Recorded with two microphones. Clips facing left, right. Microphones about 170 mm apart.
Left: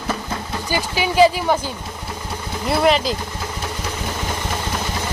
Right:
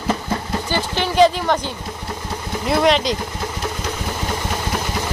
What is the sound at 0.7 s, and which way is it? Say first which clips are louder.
Speech: left 1 dB; 10° left (ahead or behind).